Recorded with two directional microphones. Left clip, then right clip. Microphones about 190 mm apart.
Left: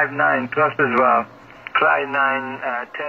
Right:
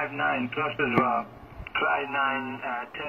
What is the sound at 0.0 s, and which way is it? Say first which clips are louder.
Speech: left 9 dB; 45° left (ahead or behind).